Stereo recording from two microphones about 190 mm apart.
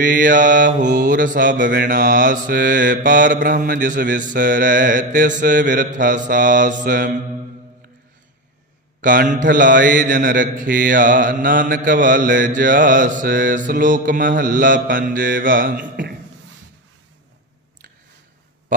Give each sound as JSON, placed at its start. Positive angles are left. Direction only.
{"t": 0.0, "sound": "mantra", "side_deg": -45}
{"t": 9.0, "sound": "mantra", "side_deg": -45}